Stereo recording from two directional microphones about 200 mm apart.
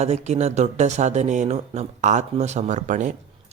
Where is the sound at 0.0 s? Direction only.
35° right (ahead or behind).